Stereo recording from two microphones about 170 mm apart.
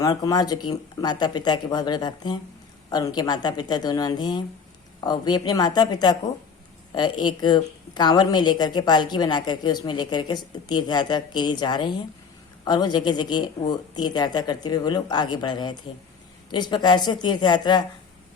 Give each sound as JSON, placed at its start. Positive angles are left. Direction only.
{"t": 0.0, "sound": "a woman's voice", "side_deg": 20}